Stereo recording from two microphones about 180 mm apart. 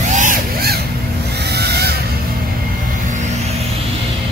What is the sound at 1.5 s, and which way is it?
Vehicle, 65° right (ahead or behind).